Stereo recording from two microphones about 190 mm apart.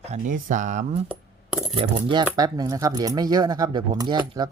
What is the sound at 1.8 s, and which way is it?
Speech, 25° right (ahead or behind).